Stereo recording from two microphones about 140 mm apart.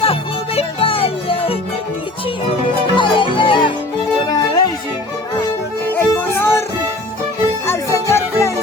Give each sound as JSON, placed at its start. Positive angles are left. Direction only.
{"t": 0.0, "sound": "music", "side_deg": 45}
{"t": 2.9, "sound": "music", "side_deg": 35}
{"t": 5.9, "sound": "music", "side_deg": 15}
{"t": 7.7, "sound": "music", "side_deg": 20}